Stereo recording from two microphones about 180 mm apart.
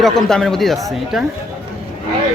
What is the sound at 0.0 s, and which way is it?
Speech, centre (ahead or behind).